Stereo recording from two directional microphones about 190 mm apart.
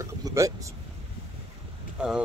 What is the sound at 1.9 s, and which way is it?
Speech, 5° right (ahead or behind).